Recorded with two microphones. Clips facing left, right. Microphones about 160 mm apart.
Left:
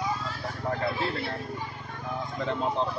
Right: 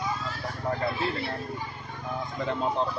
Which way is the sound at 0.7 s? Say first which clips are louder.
Right 1 dB; centre (ahead or behind).